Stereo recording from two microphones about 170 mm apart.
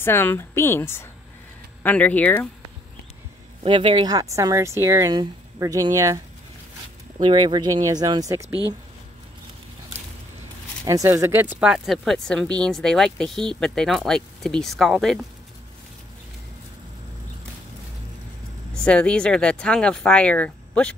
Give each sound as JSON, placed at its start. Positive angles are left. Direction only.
{"t": 0.0, "sound": "speech", "side_deg": 15}
{"t": 3.6, "sound": "speech", "side_deg": -30}
{"t": 7.2, "sound": "speech", "side_deg": -25}
{"t": 8.5, "sound": "speech", "side_deg": 20}
{"t": 10.9, "sound": "speech", "side_deg": -20}
{"t": 18.7, "sound": "speech", "side_deg": 5}